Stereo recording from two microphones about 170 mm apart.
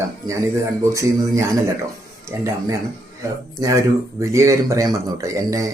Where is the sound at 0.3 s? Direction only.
15° right (ahead or behind).